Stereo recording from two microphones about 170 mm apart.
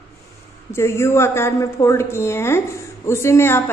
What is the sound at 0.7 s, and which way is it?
A woman's voice, 15° left (ahead or behind).